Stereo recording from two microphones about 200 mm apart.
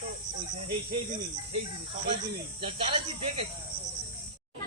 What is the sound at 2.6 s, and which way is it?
Speech, 25° right (ahead or behind).